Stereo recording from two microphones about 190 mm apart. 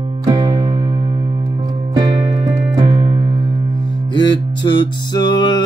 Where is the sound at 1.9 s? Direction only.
20° right (ahead or behind).